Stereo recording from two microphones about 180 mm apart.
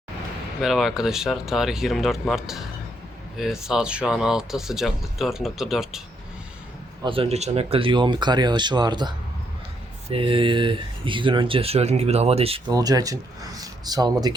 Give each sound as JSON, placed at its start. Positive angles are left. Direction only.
{"t": 0.6, "sound": "speech", "side_deg": 0}
{"t": 7.0, "sound": "speech", "side_deg": -30}
{"t": 12.7, "sound": "speech", "side_deg": -20}